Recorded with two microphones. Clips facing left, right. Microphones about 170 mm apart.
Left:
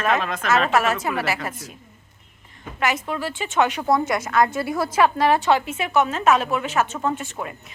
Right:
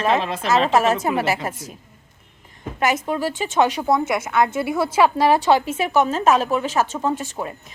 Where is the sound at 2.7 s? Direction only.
45° right (ahead or behind).